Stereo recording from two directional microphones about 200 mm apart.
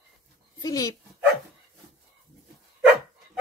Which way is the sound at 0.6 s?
20° left (ahead or behind).